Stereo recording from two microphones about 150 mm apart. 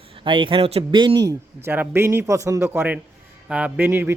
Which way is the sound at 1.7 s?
15° right (ahead or behind).